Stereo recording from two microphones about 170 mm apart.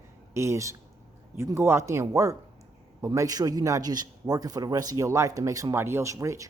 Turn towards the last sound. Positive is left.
turn(degrees=-20)  # may be behind; listen again after turning